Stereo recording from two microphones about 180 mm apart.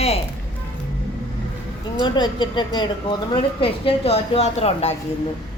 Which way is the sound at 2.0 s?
25° left (ahead or behind).